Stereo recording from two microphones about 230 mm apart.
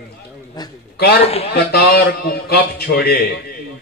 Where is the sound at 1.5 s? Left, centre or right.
Left.